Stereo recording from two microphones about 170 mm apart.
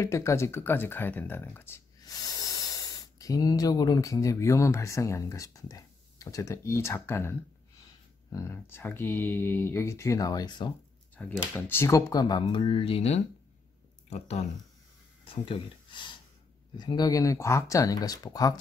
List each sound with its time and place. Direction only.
0.0 s speech: 20° left (ahead or behind)
11.1 s speech: 10° left (ahead or behind)